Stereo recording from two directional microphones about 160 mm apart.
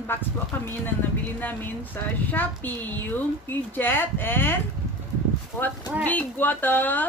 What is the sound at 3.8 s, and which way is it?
Speech, 15° left (ahead or behind).